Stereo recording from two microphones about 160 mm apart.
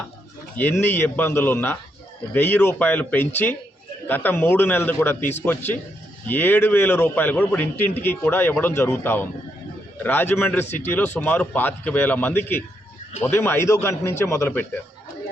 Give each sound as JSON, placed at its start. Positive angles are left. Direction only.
{"t": 0.5, "sound": "a man's voice", "side_deg": 10}